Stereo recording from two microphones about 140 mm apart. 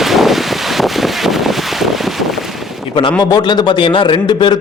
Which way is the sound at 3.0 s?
35° left (ahead or behind).